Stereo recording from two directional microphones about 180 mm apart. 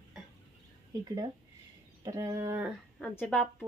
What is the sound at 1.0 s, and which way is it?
Speech, 25° right (ahead or behind).